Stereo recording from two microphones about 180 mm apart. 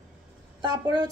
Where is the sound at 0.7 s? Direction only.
20° right (ahead or behind).